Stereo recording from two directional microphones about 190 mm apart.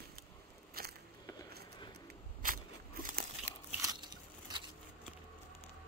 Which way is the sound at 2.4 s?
45° right (ahead or behind).